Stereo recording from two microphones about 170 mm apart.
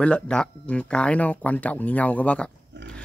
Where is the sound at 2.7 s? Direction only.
90° right.